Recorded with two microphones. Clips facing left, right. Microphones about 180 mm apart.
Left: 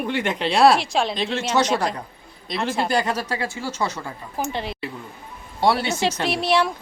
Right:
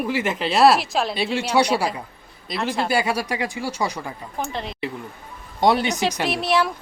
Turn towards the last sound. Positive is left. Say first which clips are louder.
# left 1 dB
turn(degrees=0)  # may be behind; listen again after turning